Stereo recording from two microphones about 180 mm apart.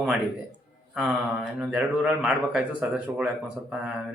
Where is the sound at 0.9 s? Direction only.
Centre (ahead or behind).